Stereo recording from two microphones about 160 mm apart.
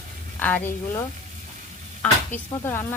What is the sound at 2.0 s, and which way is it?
Speech, 10° left (ahead or behind).